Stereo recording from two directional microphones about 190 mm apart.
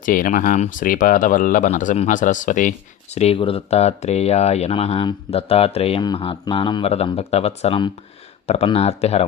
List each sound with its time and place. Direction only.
0.0 s speech: 45° left (ahead or behind)